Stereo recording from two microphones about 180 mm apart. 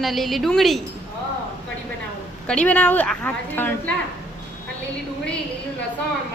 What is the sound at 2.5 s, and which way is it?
A woman's voice, 5° left (ahead or behind).